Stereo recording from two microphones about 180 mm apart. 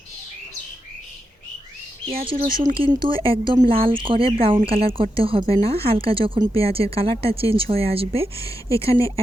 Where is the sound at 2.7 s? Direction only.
25° right (ahead or behind).